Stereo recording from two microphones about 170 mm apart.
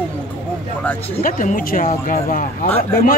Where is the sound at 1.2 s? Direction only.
50° left (ahead or behind).